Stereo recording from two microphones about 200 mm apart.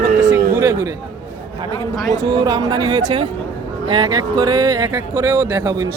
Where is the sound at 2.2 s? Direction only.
20° right (ahead or behind).